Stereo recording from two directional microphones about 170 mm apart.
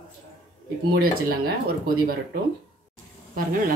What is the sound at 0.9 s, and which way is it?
Speech, 60° right (ahead or behind).